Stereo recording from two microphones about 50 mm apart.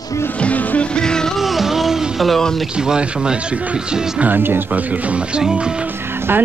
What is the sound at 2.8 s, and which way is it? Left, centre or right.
Speech, centre.